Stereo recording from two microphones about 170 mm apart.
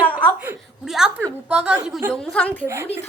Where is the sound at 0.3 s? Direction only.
10° right (ahead or behind).